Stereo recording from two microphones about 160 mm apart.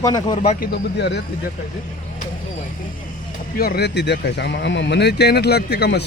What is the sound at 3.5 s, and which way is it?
Speech, 80° left.